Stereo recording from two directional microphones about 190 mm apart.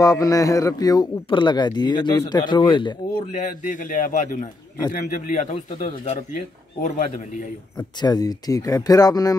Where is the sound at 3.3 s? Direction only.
40° left (ahead or behind).